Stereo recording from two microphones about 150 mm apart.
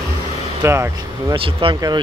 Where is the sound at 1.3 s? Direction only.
35° right (ahead or behind).